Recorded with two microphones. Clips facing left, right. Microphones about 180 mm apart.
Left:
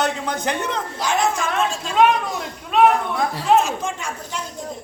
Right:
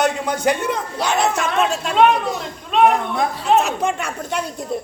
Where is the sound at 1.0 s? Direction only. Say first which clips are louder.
Right 1 dB; 70° right (ahead or behind).